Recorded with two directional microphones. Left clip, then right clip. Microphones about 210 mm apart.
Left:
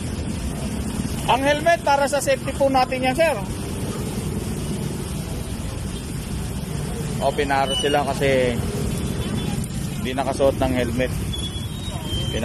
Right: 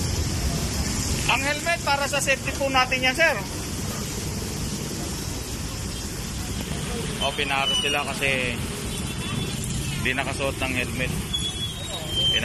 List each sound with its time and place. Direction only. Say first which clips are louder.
1.2 s speech: left 6 dB; 30° left (ahead or behind); by 3.3 s 15° left (ahead or behind)
7.2 s speech: left 4 dB; 30° left (ahead or behind)
10.0 s speech: left 1 dB; 15° left (ahead or behind)
10.4 s speech: left 7 dB; 30° left (ahead or behind)